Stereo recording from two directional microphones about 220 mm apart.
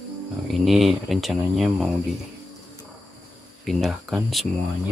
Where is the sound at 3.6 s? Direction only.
Centre (ahead or behind).